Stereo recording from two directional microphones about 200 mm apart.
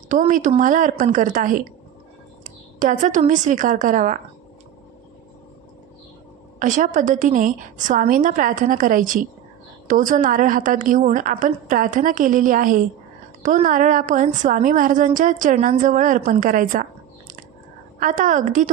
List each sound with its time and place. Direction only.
0.1 s a woman's voice: 40° right (ahead or behind)
2.7 s a woman's voice: 40° right (ahead or behind)
6.6 s a woman's voice: 40° right (ahead or behind)
18.0 s a woman's voice: 40° right (ahead or behind)